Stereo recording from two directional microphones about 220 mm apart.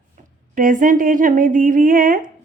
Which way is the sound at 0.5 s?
35° right (ahead or behind).